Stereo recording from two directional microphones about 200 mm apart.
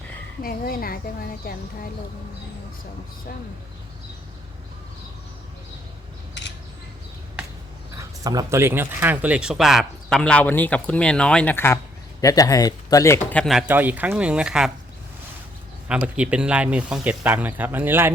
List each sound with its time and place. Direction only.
0.4 s speech: 45° left (ahead or behind)
6.4 s a sound: 60° left (ahead or behind)
7.9 s speech: 20° right (ahead or behind); by 13.4 s 15° left (ahead or behind)
13.4 s speech: centre (ahead or behind)
16.1 s speech: 5° right (ahead or behind)